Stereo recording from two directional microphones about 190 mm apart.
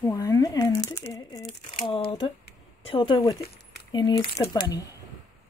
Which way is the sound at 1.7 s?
30° left (ahead or behind).